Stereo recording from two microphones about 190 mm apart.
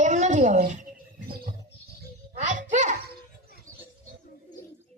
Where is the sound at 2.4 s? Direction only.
40° right (ahead or behind).